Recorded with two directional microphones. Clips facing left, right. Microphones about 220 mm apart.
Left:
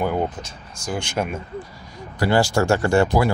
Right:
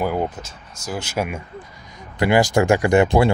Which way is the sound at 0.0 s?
5° right (ahead or behind).